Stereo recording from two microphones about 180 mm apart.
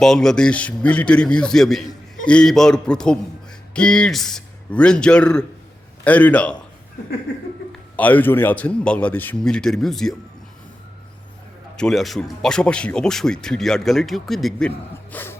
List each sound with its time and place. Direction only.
0.0 s a man's voice: centre (ahead or behind)
7.9 s a man's voice: 10° left (ahead or behind)
11.8 s speech: centre (ahead or behind)
15.1 s dog: 10° left (ahead or behind)